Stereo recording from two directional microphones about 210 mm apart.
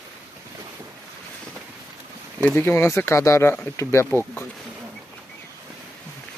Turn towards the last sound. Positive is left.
turn(degrees=10)  # may be behind; listen again after turning